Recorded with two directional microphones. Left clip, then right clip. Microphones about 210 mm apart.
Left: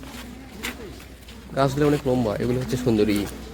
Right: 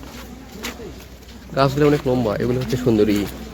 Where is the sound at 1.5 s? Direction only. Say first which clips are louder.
Right 4 dB; 5° right (ahead or behind).